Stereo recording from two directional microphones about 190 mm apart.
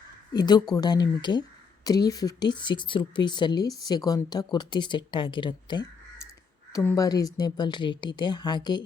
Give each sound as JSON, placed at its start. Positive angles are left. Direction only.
{"t": 0.3, "sound": "speech", "side_deg": 20}